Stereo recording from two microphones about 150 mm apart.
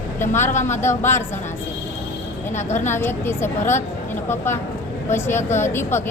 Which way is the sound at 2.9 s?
15° left (ahead or behind).